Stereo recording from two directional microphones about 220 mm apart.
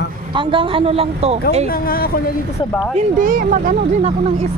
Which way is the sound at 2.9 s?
40° right (ahead or behind).